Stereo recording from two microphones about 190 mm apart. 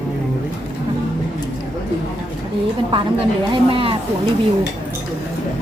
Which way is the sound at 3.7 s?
30° right (ahead or behind).